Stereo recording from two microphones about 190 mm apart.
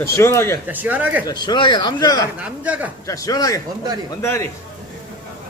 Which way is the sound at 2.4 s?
10° right (ahead or behind).